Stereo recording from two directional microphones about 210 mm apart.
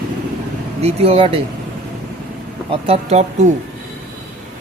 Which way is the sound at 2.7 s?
25° right (ahead or behind).